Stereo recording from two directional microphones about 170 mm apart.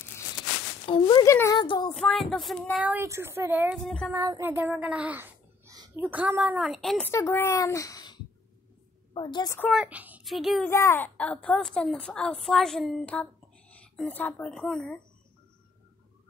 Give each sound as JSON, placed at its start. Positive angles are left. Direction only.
{"t": 0.8, "sound": "a sound", "side_deg": 30}
{"t": 1.2, "sound": "speech", "side_deg": 15}
{"t": 1.6, "sound": "a sound", "side_deg": 25}
{"t": 2.0, "sound": "a woman's voice", "side_deg": 0}
{"t": 2.8, "sound": "a woman's voice", "side_deg": -15}
{"t": 3.8, "sound": "a woman's voice", "side_deg": 5}
{"t": 4.1, "sound": "a child's voice", "side_deg": -20}
{"t": 7.1, "sound": "a woman's voice", "side_deg": 15}
{"t": 9.7, "sound": "a woman's voice", "side_deg": -5}
{"t": 10.7, "sound": "a woman's voice", "side_deg": 15}